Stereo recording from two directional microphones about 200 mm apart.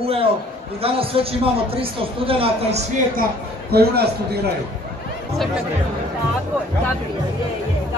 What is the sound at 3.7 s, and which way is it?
Speech, 50° right (ahead or behind).